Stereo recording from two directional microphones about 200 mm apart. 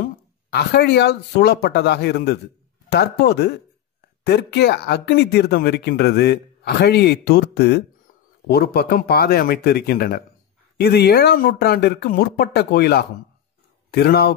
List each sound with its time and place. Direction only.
0.0 s speech: 55° left (ahead or behind)